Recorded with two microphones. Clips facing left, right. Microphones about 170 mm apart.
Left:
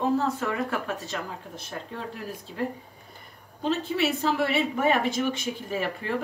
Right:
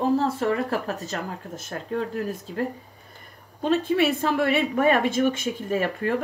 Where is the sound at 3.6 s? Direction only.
55° right (ahead or behind).